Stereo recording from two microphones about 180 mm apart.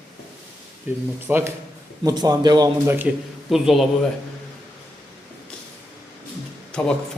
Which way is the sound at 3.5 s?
Centre (ahead or behind).